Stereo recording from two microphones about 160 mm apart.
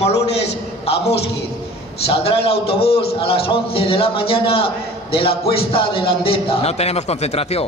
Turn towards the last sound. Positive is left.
turn(degrees=40)  # may be behind; listen again after turning